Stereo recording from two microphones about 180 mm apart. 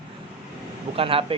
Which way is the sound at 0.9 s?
30° right (ahead or behind).